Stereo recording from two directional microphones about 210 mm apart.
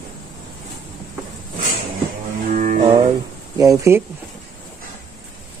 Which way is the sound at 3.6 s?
15° right (ahead or behind).